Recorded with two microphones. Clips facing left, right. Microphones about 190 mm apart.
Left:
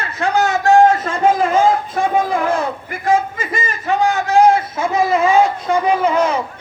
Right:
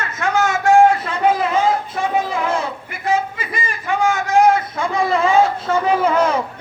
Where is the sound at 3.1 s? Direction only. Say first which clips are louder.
Left 3 dB; 45° left (ahead or behind).